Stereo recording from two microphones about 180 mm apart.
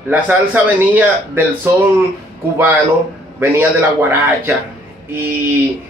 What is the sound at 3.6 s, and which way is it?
Speech, 10° right (ahead or behind).